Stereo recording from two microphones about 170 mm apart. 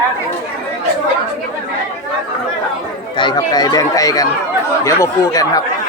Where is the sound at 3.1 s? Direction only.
25° left (ahead or behind).